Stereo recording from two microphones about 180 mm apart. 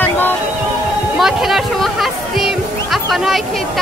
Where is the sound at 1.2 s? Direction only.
Centre (ahead or behind).